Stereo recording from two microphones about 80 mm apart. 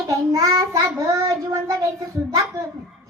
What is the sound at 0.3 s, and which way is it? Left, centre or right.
Child singing, right.